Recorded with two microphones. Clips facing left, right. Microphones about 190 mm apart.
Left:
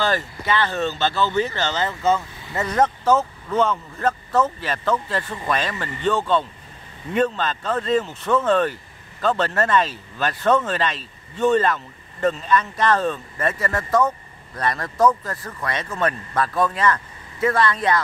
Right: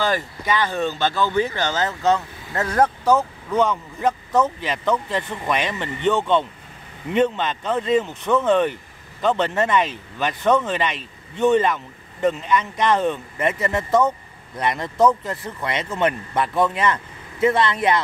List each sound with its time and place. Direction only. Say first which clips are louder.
0.0 s speech: even; 15° right (ahead or behind)
1.8 s speech: right 1 dB; centre (ahead or behind); by 17.7 s 20° right (ahead or behind)